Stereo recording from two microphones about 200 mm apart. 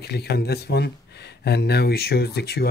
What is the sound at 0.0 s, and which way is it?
Speech, 55° left (ahead or behind).